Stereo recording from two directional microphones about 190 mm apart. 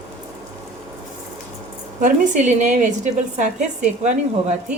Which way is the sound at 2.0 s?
40° right (ahead or behind).